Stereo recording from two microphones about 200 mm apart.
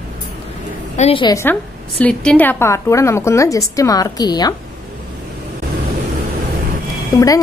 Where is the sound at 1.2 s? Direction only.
15° left (ahead or behind).